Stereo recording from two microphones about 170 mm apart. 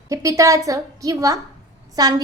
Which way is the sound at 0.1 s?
20° right (ahead or behind).